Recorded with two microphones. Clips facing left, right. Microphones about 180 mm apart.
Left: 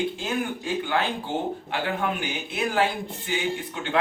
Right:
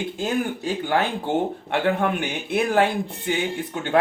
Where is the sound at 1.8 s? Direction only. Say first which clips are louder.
Right 5 dB; 50° right (ahead or behind).